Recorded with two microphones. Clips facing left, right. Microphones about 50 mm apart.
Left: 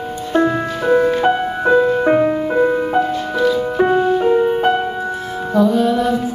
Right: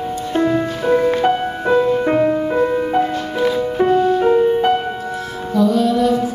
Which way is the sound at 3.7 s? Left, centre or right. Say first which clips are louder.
Right 2 dB; centre.